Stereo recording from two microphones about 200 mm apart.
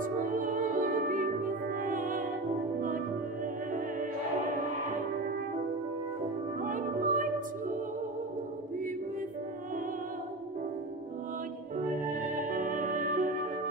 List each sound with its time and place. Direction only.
0.0 s music: 40° right (ahead or behind)
6.6 s music: 40° right (ahead or behind)
11.8 s music: 40° right (ahead or behind)